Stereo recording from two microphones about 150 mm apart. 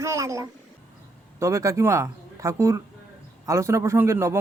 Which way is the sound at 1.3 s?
20° right (ahead or behind).